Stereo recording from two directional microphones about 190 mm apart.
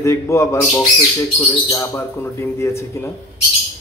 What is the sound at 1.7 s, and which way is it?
Speech, 15° left (ahead or behind).